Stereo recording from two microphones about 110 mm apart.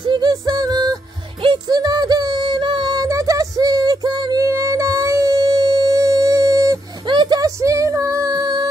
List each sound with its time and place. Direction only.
0.0 s music: 45° right (ahead or behind)
4.5 s music: 25° right (ahead or behind)
7.1 s a sound: 45° right (ahead or behind)